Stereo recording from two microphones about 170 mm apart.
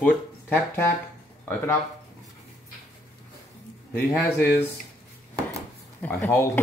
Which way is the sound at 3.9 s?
15° left (ahead or behind).